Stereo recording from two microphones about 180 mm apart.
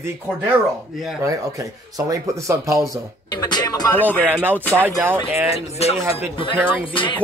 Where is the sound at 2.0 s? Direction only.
20° right (ahead or behind).